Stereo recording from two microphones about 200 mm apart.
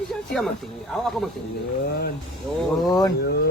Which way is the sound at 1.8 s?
50° left (ahead or behind).